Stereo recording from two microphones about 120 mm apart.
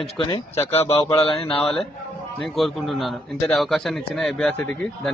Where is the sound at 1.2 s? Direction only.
55° left (ahead or behind).